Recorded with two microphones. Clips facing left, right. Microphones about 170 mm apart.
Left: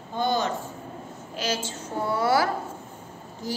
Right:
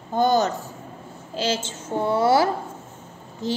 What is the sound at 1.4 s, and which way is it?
A woman's voice, 25° right (ahead or behind).